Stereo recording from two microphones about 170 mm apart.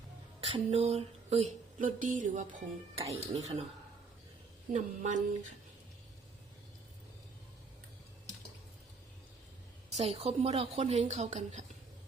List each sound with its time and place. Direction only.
0.4 s a sound: 35° right (ahead or behind)
3.1 s speech: 35° right (ahead or behind)
4.7 s speech: 45° right (ahead or behind)
10.0 s speech: 35° right (ahead or behind)